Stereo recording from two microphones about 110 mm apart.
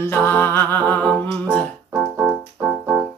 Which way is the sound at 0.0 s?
20° left (ahead or behind).